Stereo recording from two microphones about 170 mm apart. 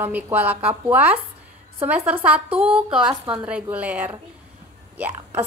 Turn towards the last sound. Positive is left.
turn(degrees=-15)  # may be behind; listen again after turning